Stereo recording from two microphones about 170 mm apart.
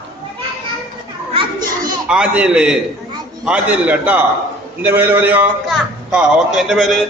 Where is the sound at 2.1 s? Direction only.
5° right (ahead or behind).